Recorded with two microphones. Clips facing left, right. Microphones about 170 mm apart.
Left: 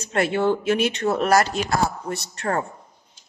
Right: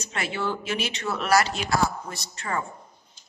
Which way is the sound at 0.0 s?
55° left (ahead or behind).